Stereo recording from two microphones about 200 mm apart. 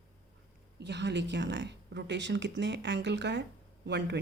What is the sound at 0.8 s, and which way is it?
Speech, 60° right (ahead or behind).